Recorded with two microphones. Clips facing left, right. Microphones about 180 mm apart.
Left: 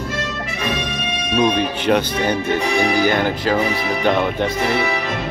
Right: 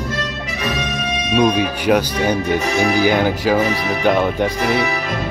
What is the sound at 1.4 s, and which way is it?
Speech, 5° right (ahead or behind).